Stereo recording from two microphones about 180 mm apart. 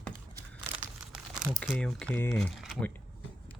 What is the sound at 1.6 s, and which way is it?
Speech, 5° left (ahead or behind).